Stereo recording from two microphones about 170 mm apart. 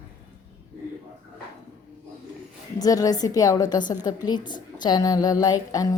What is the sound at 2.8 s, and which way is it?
A woman's voice, 20° left (ahead or behind).